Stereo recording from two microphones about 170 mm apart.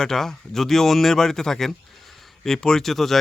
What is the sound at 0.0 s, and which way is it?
Speech, 5° left (ahead or behind).